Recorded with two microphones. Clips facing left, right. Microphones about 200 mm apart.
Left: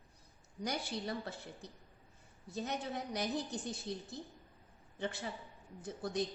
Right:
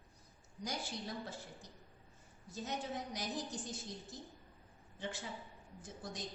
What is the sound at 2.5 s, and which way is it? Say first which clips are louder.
A woman's voice: left 3 dB; 65° left (ahead or behind).